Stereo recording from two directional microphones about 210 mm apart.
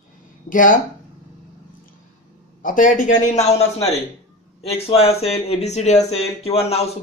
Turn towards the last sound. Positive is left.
turn(degrees=30)  # may be behind; listen again after turning